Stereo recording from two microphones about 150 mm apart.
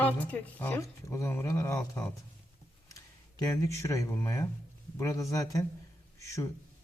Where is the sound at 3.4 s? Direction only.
20° left (ahead or behind).